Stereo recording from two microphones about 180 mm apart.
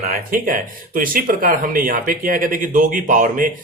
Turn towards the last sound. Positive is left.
turn(degrees=-50)  # may be behind; listen again after turning